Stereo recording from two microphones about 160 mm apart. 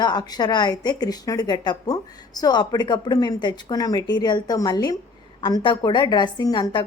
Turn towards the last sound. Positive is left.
turn(degrees=30)  # may be behind; listen again after turning